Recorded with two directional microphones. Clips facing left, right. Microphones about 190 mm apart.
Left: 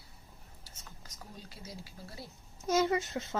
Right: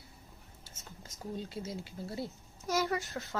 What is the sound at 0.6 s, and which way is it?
Speech, 25° right (ahead or behind).